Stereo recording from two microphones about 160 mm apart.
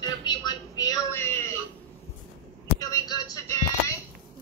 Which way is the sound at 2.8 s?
20° left (ahead or behind).